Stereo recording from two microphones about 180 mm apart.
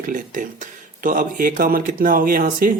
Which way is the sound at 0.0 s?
45° right (ahead or behind).